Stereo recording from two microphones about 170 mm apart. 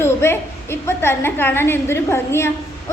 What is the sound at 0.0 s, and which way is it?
A woman's voice, 15° left (ahead or behind).